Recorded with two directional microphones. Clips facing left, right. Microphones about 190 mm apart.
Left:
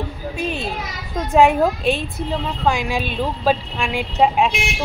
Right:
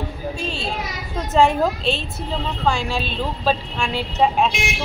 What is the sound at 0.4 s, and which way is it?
A woman's voice, 20° left (ahead or behind).